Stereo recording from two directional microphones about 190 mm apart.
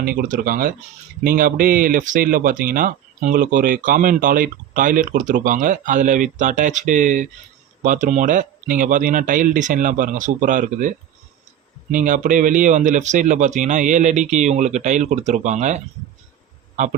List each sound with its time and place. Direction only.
0.0 s speech: 50° right (ahead or behind)